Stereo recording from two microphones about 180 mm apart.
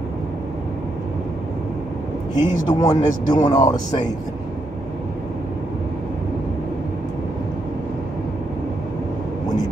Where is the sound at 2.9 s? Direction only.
45° left (ahead or behind).